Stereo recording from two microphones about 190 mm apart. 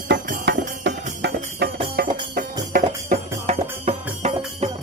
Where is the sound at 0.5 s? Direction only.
65° right (ahead or behind).